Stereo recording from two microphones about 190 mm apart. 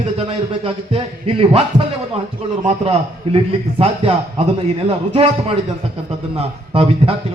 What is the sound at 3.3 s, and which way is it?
Speech, 30° right (ahead or behind).